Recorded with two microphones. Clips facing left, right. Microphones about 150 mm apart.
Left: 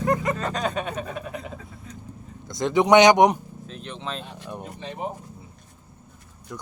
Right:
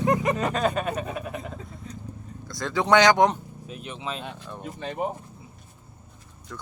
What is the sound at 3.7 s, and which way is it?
Speech, 5° right (ahead or behind).